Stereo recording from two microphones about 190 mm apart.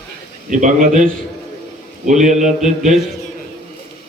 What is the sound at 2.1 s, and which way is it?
Speech, 40° right (ahead or behind).